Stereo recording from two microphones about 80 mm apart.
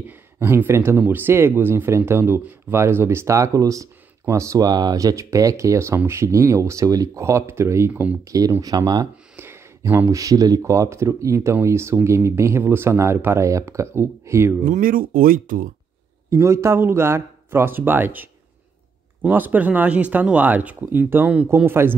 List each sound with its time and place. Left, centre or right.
0.4 s speech: right
4.6 s speech: right
7.9 s speech: centre
8.3 s speech: right
9.4 s a sound: right
10.1 s speech: right
10.6 s speech: right
16.3 s speech: right